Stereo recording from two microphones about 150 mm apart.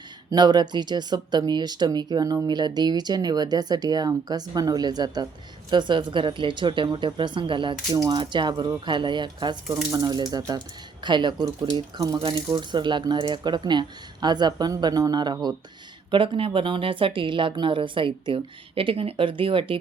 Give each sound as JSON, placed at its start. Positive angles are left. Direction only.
{"t": 0.3, "sound": "speech", "side_deg": -30}